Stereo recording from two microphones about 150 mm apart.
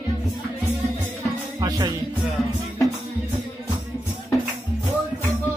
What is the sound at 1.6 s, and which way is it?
Music, 25° right (ahead or behind).